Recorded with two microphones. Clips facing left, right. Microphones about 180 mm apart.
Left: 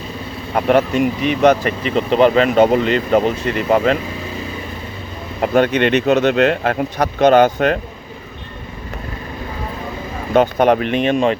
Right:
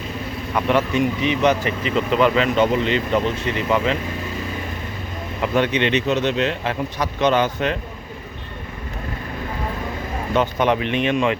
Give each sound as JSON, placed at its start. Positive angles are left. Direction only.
{"t": 0.5, "sound": "speech", "side_deg": 35}
{"t": 0.9, "sound": "speech", "side_deg": 50}
{"t": 2.0, "sound": "speech", "side_deg": 30}
{"t": 5.4, "sound": "speech", "side_deg": 45}
{"t": 10.3, "sound": "speech", "side_deg": 40}